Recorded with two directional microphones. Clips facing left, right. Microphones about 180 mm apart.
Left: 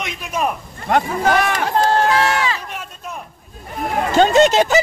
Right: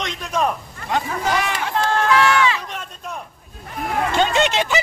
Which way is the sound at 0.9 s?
55° left (ahead or behind).